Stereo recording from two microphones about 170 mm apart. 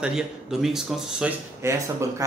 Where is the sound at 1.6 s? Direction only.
15° right (ahead or behind).